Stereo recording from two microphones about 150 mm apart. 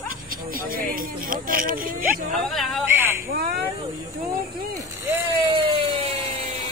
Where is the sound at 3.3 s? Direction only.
90° right.